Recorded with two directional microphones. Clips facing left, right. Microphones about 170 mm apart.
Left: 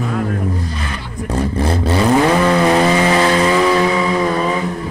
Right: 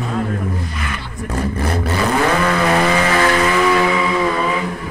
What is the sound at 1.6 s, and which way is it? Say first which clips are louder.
Vehicle: left 5 dB; 25° left (ahead or behind).